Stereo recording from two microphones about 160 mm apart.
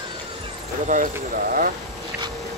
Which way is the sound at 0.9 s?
55° right (ahead or behind).